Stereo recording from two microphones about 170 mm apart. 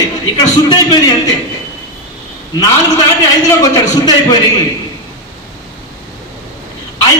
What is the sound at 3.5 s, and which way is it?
Speech, 20° left (ahead or behind).